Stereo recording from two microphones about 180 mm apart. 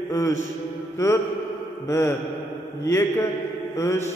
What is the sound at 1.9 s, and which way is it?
A man's voice, 15° left (ahead or behind).